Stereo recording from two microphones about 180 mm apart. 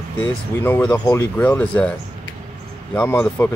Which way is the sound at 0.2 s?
10° left (ahead or behind).